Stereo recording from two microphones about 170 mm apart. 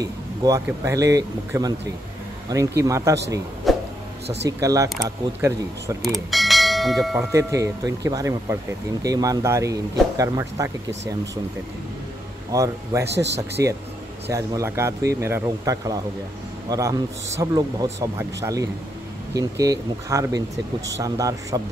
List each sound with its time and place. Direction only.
0.0 s speech: 20° right (ahead or behind)
2.8 s speech: 20° right (ahead or behind)
3.7 s a sound: centre (ahead or behind)
4.5 s speech: 20° right (ahead or behind)
6.0 s bell: centre (ahead or behind)
7.2 s speech: 20° right (ahead or behind)
12.4 s speech: 20° right (ahead or behind)
13.0 s speech: 90° right
13.6 s speech: 15° right (ahead or behind)